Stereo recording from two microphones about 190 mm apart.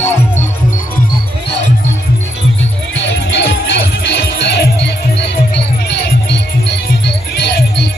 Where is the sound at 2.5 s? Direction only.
75° left (ahead or behind).